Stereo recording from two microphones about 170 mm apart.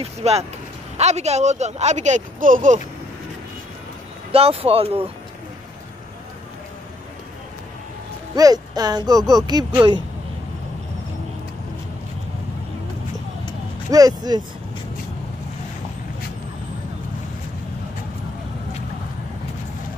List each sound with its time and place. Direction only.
0.0 s speech: 40° right (ahead or behind)
4.3 s speech: 35° right (ahead or behind)
8.4 s speech: 20° right (ahead or behind)
13.8 s speech: 20° right (ahead or behind)